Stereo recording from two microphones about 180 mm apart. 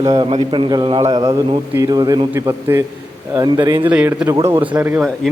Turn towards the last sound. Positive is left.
turn(degrees=-10)  # may be behind; listen again after turning